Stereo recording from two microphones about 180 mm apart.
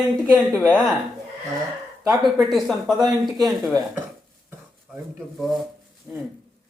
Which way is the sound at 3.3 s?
20° right (ahead or behind).